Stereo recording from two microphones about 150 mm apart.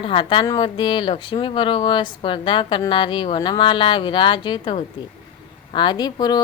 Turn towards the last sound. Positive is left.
turn(degrees=25)  # may be behind; listen again after turning